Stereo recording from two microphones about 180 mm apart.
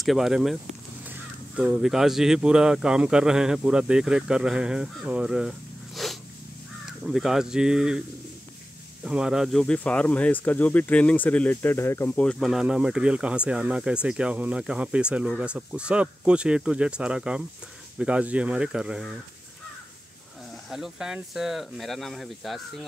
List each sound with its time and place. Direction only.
0.0 s speech: centre (ahead or behind)
9.0 s speech: 5° right (ahead or behind)
20.7 s speech: 5° right (ahead or behind)